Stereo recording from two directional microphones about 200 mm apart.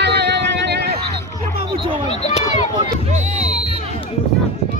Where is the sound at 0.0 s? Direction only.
55° right (ahead or behind).